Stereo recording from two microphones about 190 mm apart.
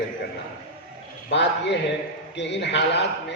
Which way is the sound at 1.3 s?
65° left (ahead or behind).